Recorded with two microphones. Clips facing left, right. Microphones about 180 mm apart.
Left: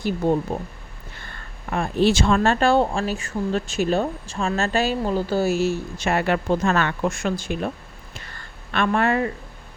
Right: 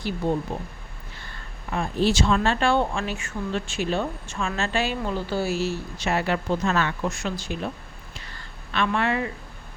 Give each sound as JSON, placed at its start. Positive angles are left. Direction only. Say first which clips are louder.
{"t": 1.7, "sound": "speech", "louder": "left 4 dB", "side_deg": 60}
{"t": 8.7, "sound": "speech", "louder": "left 4 dB", "side_deg": 45}